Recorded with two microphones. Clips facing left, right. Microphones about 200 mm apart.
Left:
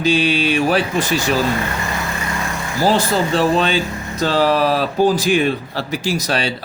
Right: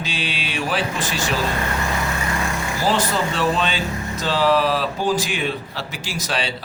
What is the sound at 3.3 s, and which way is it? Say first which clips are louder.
Speech: left 8 dB; 40° left (ahead or behind).